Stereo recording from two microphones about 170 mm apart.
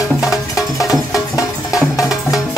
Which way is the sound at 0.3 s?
20° left (ahead or behind).